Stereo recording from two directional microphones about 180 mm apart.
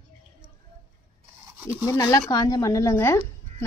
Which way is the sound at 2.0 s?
20° left (ahead or behind).